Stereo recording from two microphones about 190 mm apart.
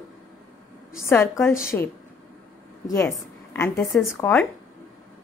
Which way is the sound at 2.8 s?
15° left (ahead or behind).